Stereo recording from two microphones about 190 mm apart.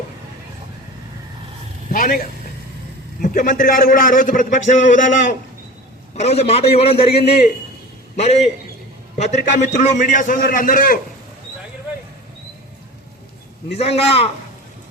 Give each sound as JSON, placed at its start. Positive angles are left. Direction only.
{"t": 1.9, "sound": "a man's voice", "side_deg": 50}
{"t": 13.7, "sound": "a man's voice", "side_deg": 30}